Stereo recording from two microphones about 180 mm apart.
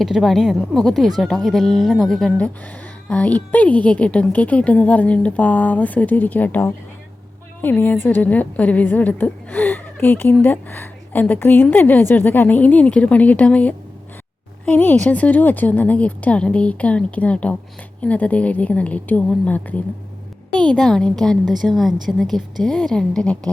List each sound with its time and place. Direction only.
0.0 s a woman's voice: centre (ahead or behind)